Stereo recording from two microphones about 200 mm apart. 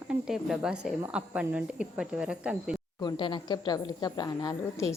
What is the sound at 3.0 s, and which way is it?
A woman's voice, 25° left (ahead or behind).